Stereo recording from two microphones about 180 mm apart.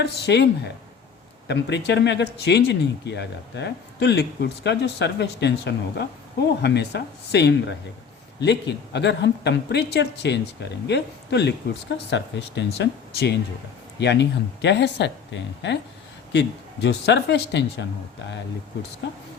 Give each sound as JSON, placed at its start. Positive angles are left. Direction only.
{"t": 0.0, "sound": "speech", "side_deg": 70}
{"t": 1.5, "sound": "speech", "side_deg": 70}